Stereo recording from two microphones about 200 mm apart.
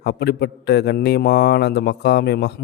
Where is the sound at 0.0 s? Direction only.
55° left (ahead or behind).